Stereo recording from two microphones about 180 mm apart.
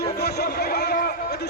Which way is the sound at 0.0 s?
65° left (ahead or behind).